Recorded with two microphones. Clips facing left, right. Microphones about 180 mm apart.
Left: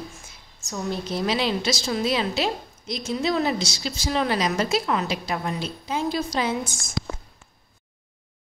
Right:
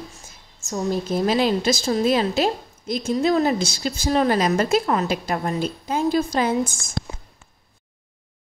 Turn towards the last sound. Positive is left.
turn(degrees=-50)  # may be behind; listen again after turning